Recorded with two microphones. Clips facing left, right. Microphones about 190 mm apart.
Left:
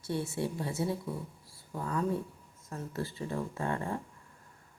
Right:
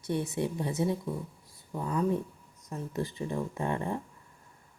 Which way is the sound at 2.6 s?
15° right (ahead or behind).